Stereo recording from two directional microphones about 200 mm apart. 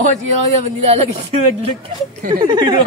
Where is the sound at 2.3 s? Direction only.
20° right (ahead or behind).